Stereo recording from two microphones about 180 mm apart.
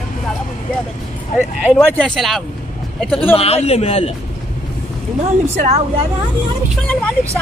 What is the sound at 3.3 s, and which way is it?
Speech, 35° left (ahead or behind).